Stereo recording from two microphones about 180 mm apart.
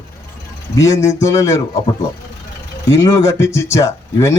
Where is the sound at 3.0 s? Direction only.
15° left (ahead or behind).